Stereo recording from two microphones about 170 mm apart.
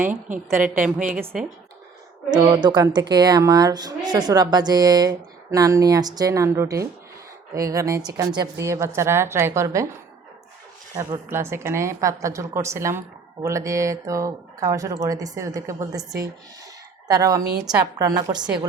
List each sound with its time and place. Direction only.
0.5 s a woman's voice: 10° right (ahead or behind)
2.3 s a woman's voice: 25° right (ahead or behind)
10.9 s a woman's voice: 20° right (ahead or behind)